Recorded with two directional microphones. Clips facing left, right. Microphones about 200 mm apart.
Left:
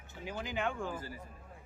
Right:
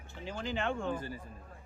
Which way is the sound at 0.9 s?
25° right (ahead or behind).